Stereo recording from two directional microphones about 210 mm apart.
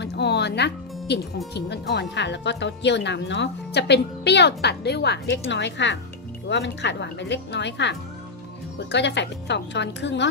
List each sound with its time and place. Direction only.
0.0 s music: 55° left (ahead or behind)
1.5 s speech: 50° left (ahead or behind)